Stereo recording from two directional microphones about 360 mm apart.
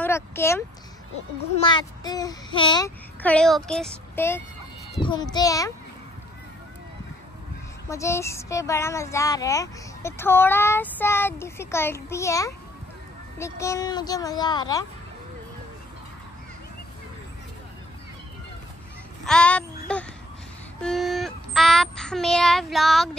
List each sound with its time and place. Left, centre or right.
0.0 s speech: centre
1.7 s speech: centre
7.9 s speech: centre
19.2 s speech: centre